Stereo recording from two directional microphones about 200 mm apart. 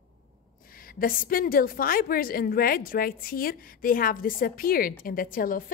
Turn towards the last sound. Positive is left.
turn(degrees=45)  # may be behind; listen again after turning